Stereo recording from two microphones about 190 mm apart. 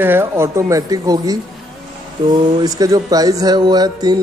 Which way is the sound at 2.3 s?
25° right (ahead or behind).